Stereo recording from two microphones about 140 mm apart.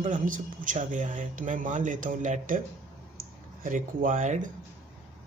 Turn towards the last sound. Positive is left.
turn(degrees=-60)  # may be behind; listen again after turning